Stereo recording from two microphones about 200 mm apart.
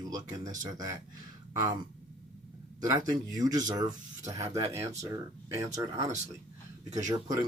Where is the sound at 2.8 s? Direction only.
20° right (ahead or behind).